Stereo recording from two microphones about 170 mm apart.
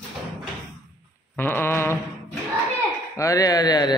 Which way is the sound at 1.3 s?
10° left (ahead or behind).